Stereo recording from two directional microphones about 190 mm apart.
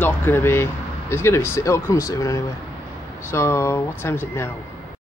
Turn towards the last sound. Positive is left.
turn(degrees=15)  # may be behind; listen again after turning